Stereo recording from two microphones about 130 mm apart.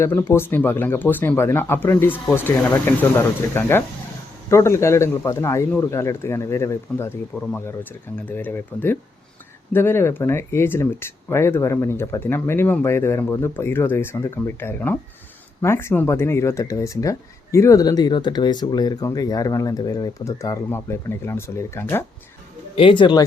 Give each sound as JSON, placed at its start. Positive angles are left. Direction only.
{"t": 0.0, "sound": "speech", "side_deg": 20}
{"t": 22.7, "sound": "speech", "side_deg": 40}